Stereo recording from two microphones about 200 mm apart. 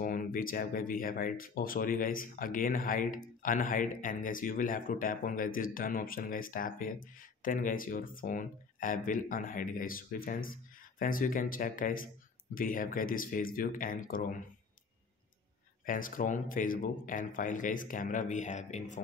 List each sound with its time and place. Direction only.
0.0 s speech: 45° left (ahead or behind)
15.8 s speech: 45° left (ahead or behind)